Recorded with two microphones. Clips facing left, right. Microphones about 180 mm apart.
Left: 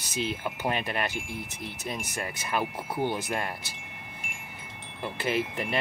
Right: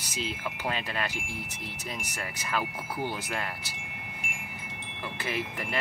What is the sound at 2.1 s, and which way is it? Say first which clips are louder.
Speech: left 1 dB; 20° left (ahead or behind).